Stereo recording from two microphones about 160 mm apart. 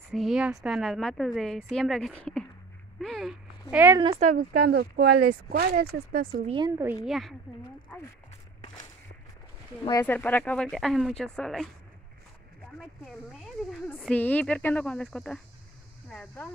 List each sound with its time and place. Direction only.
0.1 s a woman's voice: centre (ahead or behind)
3.7 s a woman's voice: 15° right (ahead or behind)
4.2 s speech: 55° right (ahead or behind)
6.4 s a woman's voice: 30° right (ahead or behind)
6.7 s a woman's voice: 15° right (ahead or behind)
7.1 s a woman's voice: centre (ahead or behind)
10.0 s a woman's voice: 10° left (ahead or behind)
13.0 s a woman's voice: centre (ahead or behind)